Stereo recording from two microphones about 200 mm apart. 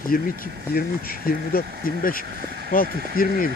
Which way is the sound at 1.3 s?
45° left (ahead or behind).